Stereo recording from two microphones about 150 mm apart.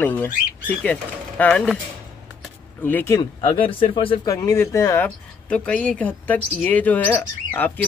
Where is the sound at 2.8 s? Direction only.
10° left (ahead or behind).